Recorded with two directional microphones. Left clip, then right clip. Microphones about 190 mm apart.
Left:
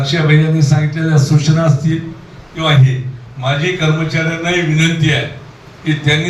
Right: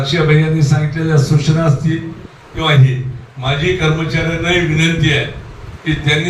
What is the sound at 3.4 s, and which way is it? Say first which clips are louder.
Speech: even; 35° left (ahead or behind).